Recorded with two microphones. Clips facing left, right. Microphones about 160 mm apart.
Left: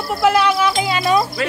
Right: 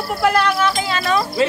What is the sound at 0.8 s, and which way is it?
Speech, 15° left (ahead or behind).